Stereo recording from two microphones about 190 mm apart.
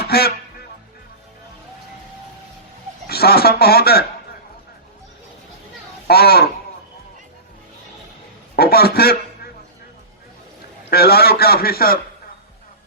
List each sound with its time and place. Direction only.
0.1 s music: 55° left (ahead or behind)
3.1 s a man's voice: 55° left (ahead or behind)
6.1 s a man's voice: 55° left (ahead or behind)
8.5 s a man's voice: 55° left (ahead or behind)
10.8 s a man's voice: 55° left (ahead or behind)